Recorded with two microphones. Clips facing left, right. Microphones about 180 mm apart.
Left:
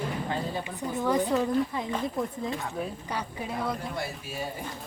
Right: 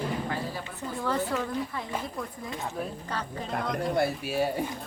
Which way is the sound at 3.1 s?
10° left (ahead or behind).